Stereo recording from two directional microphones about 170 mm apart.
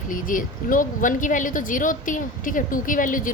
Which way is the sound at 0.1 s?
50° left (ahead or behind).